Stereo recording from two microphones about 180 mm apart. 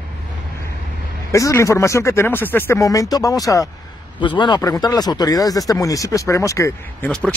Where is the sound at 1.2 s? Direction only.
15° left (ahead or behind).